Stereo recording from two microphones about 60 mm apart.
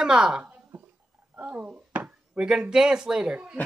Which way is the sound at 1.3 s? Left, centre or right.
Right.